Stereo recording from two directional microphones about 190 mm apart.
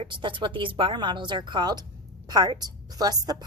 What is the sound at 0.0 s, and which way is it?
A woman's voice, 25° right (ahead or behind).